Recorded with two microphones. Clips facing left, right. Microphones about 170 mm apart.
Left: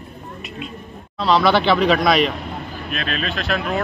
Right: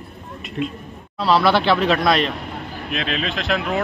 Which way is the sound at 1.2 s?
5° right (ahead or behind).